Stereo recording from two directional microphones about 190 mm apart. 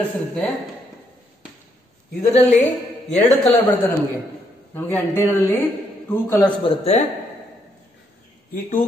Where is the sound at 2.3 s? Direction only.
35° left (ahead or behind).